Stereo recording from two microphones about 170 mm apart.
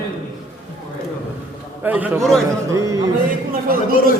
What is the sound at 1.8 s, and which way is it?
A man's voice, 10° right (ahead or behind).